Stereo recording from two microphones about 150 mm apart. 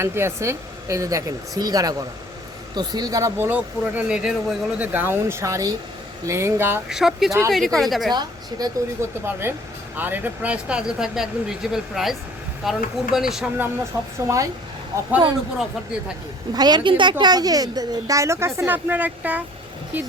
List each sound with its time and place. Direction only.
0.0 s a woman's voice: 15° right (ahead or behind)
6.8 s speech: 5° right (ahead or behind)
8.1 s a woman's voice: 25° right (ahead or behind)
9.2 s speech: 15° right (ahead or behind)
13.9 s a woman's voice: 20° right (ahead or behind)
16.5 s a woman's voice: 25° right (ahead or behind); by 19.4 s 10° right (ahead or behind)